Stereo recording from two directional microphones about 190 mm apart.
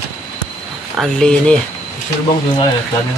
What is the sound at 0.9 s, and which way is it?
Speech, centre (ahead or behind).